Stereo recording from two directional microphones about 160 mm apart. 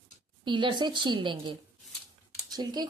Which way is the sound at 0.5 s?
30° right (ahead or behind).